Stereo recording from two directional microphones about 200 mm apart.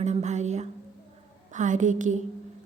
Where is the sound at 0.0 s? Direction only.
35° right (ahead or behind).